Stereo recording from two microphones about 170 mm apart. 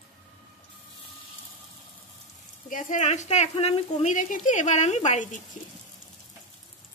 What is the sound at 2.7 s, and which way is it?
Speech, 45° left (ahead or behind).